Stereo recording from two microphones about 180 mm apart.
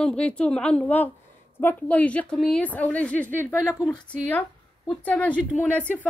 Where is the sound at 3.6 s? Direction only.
Centre (ahead or behind).